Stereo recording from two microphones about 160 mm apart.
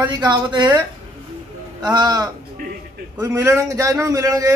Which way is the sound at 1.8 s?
25° right (ahead or behind).